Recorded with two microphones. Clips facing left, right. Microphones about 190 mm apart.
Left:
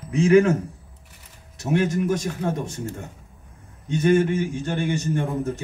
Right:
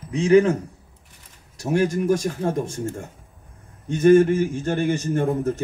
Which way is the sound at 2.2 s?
45° right (ahead or behind).